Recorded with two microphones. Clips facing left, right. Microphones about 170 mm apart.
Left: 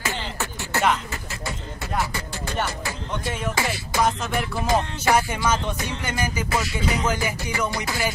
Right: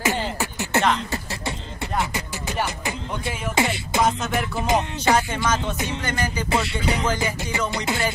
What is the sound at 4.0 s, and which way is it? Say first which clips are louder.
Music: right 1 dB; centre (ahead or behind).